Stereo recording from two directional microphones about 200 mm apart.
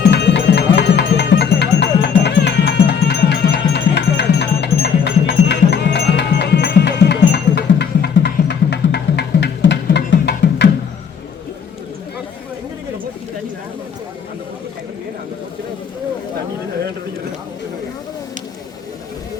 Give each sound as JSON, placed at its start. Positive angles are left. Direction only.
{"t": 0.1, "sound": "music", "side_deg": 60}